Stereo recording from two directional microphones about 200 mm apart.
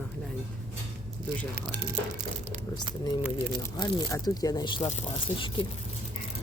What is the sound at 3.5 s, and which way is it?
Speech, 20° left (ahead or behind).